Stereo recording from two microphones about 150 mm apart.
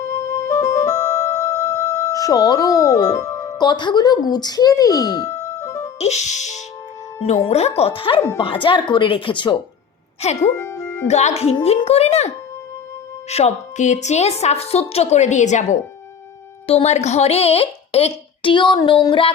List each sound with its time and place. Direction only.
0.0 s music: 20° left (ahead or behind)
3.6 s speech: 30° left (ahead or behind)
6.0 s a woman's voice: 50° left (ahead or behind); by 9.6 s 35° left (ahead or behind)
10.2 s a woman's voice: 45° left (ahead or behind)
10.5 s music: 15° left (ahead or behind)
11.1 s a woman's voice: 50° left (ahead or behind)
18.4 s a woman's voice: 30° left (ahead or behind)